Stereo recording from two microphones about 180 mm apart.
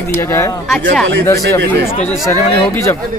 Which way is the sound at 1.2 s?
15° left (ahead or behind).